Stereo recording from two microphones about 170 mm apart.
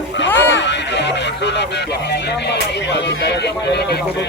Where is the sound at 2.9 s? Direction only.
85° left.